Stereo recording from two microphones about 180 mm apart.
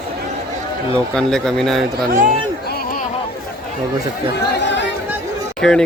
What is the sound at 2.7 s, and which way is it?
Chatter, 50° left (ahead or behind).